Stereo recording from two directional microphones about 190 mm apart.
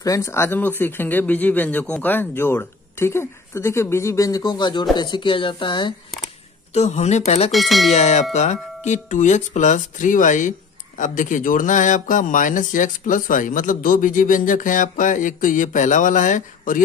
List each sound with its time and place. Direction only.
0.0 s speech: 15° left (ahead or behind)
6.7 s speech: 35° left (ahead or behind)
7.5 s speech: centre (ahead or behind)
7.9 s speech: 35° left (ahead or behind)